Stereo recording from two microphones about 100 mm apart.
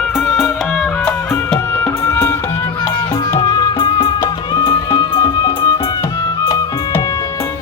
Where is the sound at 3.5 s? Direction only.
45° left (ahead or behind).